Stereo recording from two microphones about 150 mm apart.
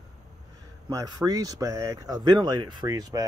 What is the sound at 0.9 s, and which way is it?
Speech, 25° right (ahead or behind).